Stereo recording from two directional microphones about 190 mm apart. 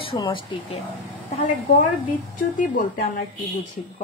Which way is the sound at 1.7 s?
45° left (ahead or behind).